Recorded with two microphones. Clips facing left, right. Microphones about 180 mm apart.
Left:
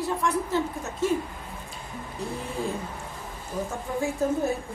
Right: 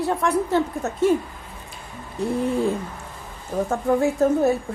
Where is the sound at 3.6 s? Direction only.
65° right (ahead or behind).